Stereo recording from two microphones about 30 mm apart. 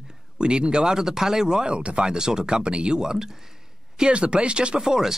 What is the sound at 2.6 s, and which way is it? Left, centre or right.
Speech, right.